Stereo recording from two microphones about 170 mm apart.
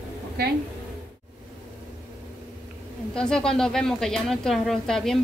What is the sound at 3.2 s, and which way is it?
A woman's voice, 5° left (ahead or behind).